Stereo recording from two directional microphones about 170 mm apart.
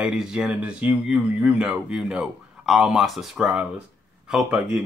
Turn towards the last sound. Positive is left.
turn(degrees=-5)  # may be behind; listen again after turning